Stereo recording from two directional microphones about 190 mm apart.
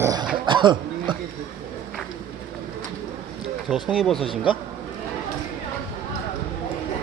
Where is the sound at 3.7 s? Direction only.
Centre (ahead or behind).